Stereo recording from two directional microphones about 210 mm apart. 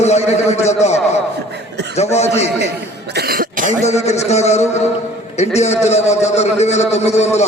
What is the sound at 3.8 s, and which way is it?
A man's voice, 30° left (ahead or behind).